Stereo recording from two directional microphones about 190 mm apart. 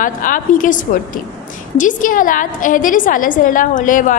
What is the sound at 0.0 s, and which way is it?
A woman's voice, 45° left (ahead or behind).